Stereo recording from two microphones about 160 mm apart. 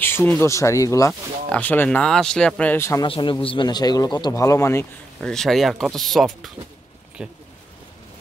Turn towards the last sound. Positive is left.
turn(degrees=-5)  # may be behind; listen again after turning